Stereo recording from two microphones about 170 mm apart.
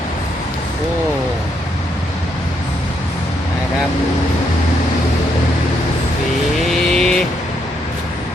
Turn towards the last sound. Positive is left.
turn(degrees=5)  # may be behind; listen again after turning